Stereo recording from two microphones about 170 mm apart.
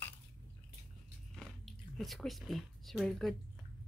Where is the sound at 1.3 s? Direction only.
Centre (ahead or behind).